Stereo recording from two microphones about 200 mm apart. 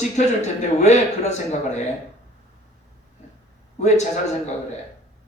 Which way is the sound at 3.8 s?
35° left (ahead or behind).